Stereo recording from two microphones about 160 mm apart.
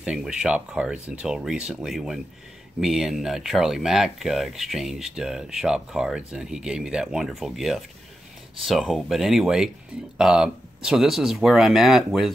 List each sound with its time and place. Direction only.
0.0 s speech: 5° right (ahead or behind)